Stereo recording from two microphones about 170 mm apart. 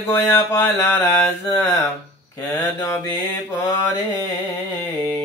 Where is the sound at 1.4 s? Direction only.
15° left (ahead or behind).